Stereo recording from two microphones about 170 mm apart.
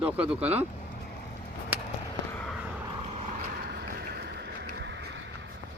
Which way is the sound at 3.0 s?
40° right (ahead or behind).